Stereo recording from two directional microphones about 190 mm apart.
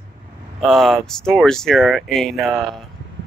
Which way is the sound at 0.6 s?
Centre (ahead or behind).